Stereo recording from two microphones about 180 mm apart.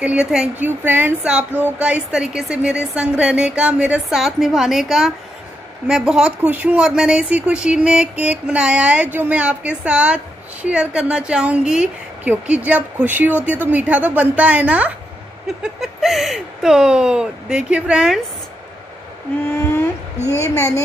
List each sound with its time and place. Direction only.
0.0 s speech: 5° right (ahead or behind)
19.6 s a sound: 15° left (ahead or behind)
20.2 s a woman's voice: 15° left (ahead or behind)